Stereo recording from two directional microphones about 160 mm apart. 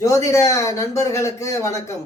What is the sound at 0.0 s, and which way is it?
Speech, 20° left (ahead or behind).